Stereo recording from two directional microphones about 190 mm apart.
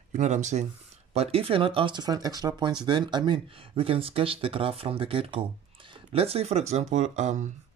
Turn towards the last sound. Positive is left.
turn(degrees=-40)  # may be behind; listen again after turning